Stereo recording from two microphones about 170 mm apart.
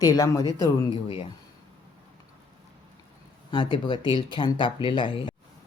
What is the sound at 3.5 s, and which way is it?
Speech, 30° left (ahead or behind).